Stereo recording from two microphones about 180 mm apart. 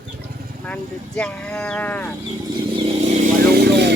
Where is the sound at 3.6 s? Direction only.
70° right (ahead or behind).